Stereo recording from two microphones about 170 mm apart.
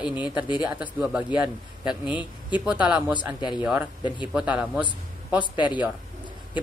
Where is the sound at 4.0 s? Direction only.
25° left (ahead or behind).